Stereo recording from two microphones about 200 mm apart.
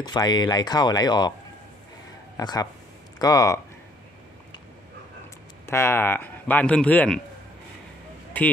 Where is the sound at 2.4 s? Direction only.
20° left (ahead or behind).